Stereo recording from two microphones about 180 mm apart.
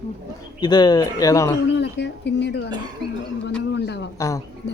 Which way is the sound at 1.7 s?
75° left (ahead or behind).